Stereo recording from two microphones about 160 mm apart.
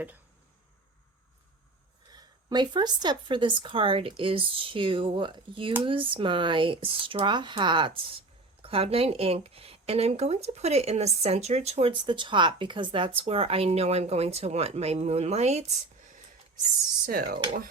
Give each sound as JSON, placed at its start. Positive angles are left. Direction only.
{"t": 2.1, "sound": "speech", "side_deg": -25}
{"t": 17.1, "sound": "speech", "side_deg": -75}